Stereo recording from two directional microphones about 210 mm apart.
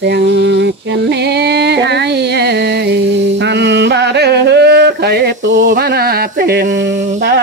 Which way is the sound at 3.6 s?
55° right (ahead or behind).